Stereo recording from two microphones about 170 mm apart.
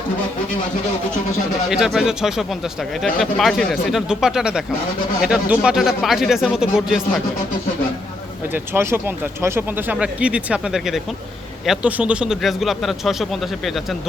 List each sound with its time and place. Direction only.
1.7 s speech: 5° right (ahead or behind)
8.5 s speech: 15° right (ahead or behind)